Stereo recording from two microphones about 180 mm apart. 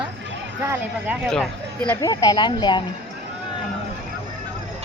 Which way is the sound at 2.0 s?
20° left (ahead or behind).